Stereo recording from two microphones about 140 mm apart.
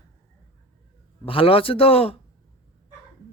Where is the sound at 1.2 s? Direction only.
40° left (ahead or behind).